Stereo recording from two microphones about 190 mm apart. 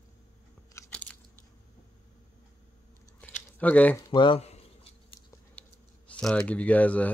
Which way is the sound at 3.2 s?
10° left (ahead or behind).